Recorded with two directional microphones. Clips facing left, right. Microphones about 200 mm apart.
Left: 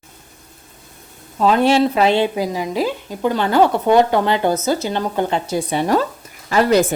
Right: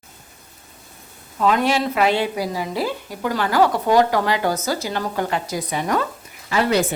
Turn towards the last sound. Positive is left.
turn(degrees=45)  # may be behind; listen again after turning